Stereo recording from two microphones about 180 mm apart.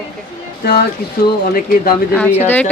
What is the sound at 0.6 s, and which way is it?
Speech, 60° left (ahead or behind).